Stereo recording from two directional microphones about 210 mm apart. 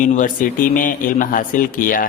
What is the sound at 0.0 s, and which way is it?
A man's voice, 40° left (ahead or behind).